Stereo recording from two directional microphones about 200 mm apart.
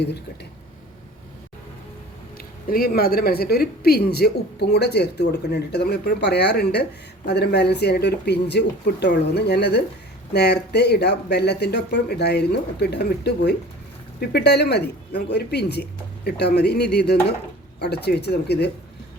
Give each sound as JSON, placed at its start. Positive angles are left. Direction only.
{"t": 2.6, "sound": "speech", "side_deg": 50}